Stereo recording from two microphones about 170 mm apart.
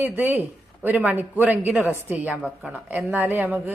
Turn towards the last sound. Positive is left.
turn(degrees=-10)  # may be behind; listen again after turning